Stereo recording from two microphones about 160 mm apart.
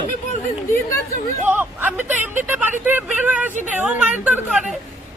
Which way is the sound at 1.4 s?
10° right (ahead or behind).